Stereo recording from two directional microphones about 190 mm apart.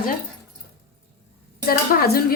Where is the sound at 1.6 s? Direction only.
50° left (ahead or behind).